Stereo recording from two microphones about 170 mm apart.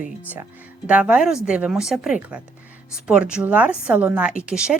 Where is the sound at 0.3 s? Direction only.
10° right (ahead or behind).